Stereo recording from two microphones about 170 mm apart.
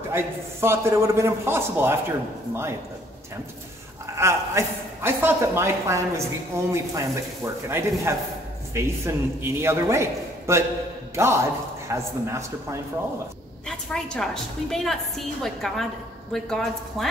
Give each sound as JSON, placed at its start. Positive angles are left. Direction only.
{"t": 0.1, "sound": "a man's voice", "side_deg": -15}
{"t": 4.2, "sound": "a man's voice", "side_deg": -15}
{"t": 13.7, "sound": "a woman's voice", "side_deg": 5}